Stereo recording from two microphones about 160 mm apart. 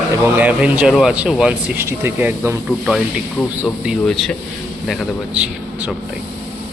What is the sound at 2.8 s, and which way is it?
A man's voice, 5° right (ahead or behind).